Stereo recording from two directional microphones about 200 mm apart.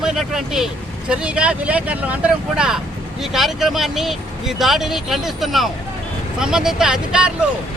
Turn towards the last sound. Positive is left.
turn(degrees=-5)  # may be behind; listen again after turning